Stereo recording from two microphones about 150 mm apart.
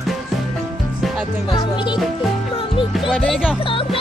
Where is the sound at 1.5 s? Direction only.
30° left (ahead or behind).